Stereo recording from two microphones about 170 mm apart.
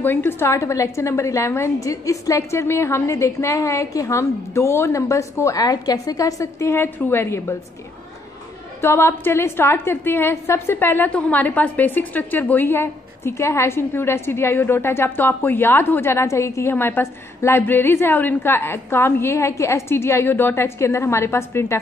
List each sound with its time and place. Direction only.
0.0 s a woman's voice: 10° left (ahead or behind)
8.8 s a woman's voice: 15° left (ahead or behind)